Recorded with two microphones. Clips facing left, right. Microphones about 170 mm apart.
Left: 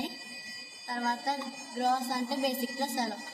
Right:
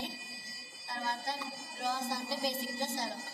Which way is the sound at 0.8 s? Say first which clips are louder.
Left 5 dB; 60° left (ahead or behind).